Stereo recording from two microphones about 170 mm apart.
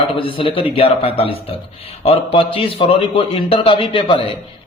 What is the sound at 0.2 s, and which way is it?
Speech, 30° left (ahead or behind).